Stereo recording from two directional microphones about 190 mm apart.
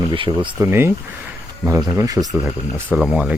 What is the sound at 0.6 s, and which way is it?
Speech, 10° right (ahead or behind).